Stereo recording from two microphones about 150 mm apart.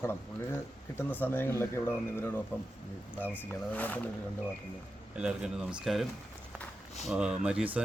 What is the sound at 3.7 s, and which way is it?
Speech, 10° left (ahead or behind).